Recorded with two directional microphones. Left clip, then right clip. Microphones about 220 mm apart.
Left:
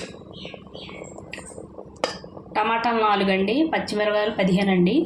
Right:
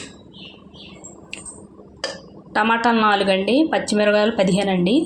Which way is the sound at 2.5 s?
30° right (ahead or behind).